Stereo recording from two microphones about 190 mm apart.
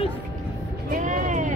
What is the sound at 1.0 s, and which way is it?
Music, 40° right (ahead or behind).